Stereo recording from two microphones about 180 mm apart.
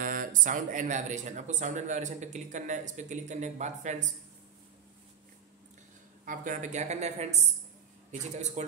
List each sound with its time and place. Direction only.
0.0 s speech: 50° right (ahead or behind)
6.2 s speech: 50° right (ahead or behind)